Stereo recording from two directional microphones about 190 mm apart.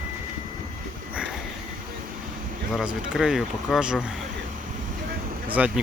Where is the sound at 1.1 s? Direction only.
5° right (ahead or behind).